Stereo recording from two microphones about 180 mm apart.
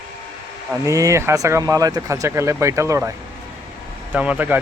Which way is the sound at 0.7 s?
15° right (ahead or behind).